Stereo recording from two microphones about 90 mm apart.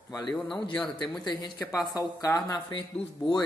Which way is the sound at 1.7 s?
40° left (ahead or behind).